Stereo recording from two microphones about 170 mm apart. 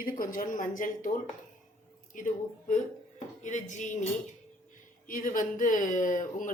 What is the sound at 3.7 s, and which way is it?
Speech, 45° left (ahead or behind).